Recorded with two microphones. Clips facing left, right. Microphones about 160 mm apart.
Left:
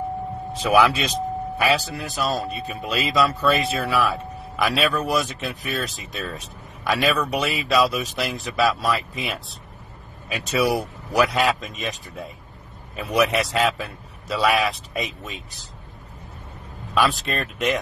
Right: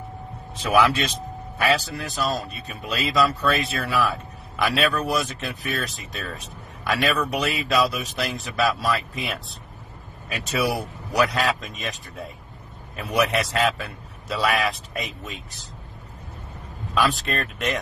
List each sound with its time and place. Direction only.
0.5 s speech: centre (ahead or behind)
16.9 s speech: centre (ahead or behind)